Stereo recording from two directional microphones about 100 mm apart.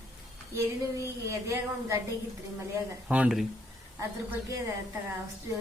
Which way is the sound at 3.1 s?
15° right (ahead or behind).